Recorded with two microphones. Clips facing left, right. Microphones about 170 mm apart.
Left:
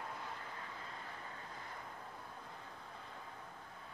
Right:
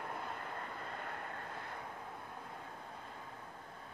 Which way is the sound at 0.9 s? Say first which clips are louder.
Right 5 dB; 65° right (ahead or behind).